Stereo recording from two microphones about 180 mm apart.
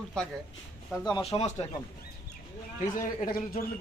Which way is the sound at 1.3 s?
35° left (ahead or behind).